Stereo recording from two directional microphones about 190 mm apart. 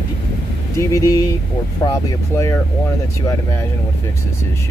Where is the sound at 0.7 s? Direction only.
15° left (ahead or behind).